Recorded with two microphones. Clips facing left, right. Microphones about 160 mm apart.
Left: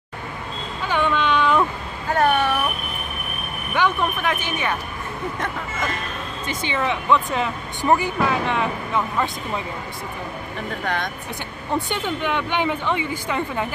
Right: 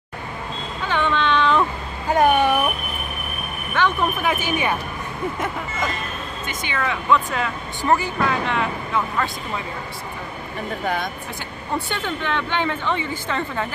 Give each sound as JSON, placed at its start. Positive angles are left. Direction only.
{"t": 0.8, "sound": "a sound", "side_deg": 10}
{"t": 2.0, "sound": "a sound", "side_deg": -15}
{"t": 3.8, "sound": "a woman's voice", "side_deg": 15}
{"t": 4.2, "sound": "speech", "side_deg": -5}
{"t": 6.4, "sound": "speech", "side_deg": 30}
{"t": 11.9, "sound": "a woman's voice", "side_deg": 15}